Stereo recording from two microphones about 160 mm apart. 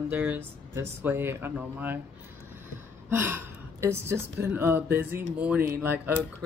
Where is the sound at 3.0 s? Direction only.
15° right (ahead or behind).